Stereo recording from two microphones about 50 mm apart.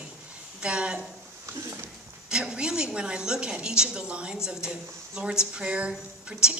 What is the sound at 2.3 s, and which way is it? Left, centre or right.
Speech, centre.